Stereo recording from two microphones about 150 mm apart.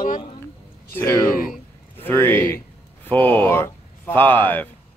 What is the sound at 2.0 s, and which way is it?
Speech, 15° left (ahead or behind).